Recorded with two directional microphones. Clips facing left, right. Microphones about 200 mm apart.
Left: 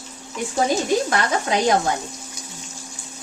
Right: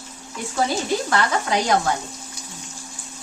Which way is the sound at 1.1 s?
20° left (ahead or behind).